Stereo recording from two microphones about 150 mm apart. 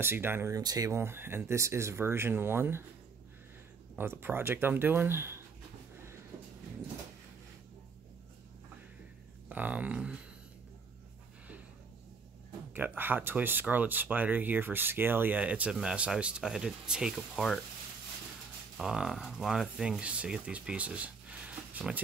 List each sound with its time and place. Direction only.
0.0 s speech: 15° right (ahead or behind)
4.0 s speech: 15° right (ahead or behind)
6.3 s vehicle: 15° right (ahead or behind)
9.5 s speech: 10° right (ahead or behind)
12.7 s speech: 15° right (ahead or behind); by 17.6 s 5° left (ahead or behind)
18.8 s speech: 5° right (ahead or behind)